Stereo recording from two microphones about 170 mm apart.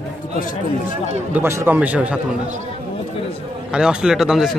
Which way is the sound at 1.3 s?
15° right (ahead or behind).